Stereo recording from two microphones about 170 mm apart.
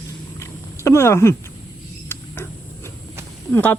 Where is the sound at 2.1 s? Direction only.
15° left (ahead or behind).